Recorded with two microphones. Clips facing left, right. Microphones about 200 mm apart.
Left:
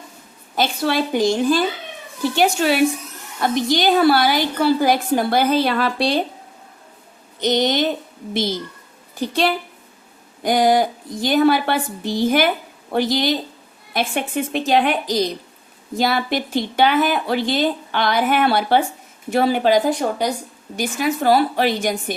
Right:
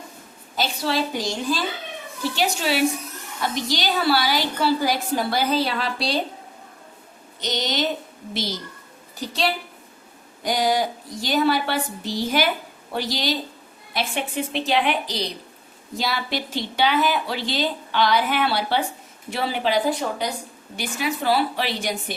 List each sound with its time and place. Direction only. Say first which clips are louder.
0.5 s a woman's voice: left 4 dB; 55° left (ahead or behind)
7.4 s a woman's voice: left 7 dB; 55° left (ahead or behind)